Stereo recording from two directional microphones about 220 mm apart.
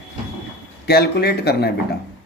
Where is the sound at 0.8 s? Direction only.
45° left (ahead or behind).